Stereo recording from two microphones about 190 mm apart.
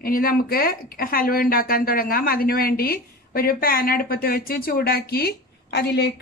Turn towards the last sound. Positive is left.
turn(degrees=60)  # may be behind; listen again after turning